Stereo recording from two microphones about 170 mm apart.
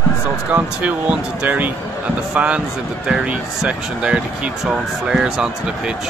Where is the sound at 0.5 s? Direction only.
10° right (ahead or behind).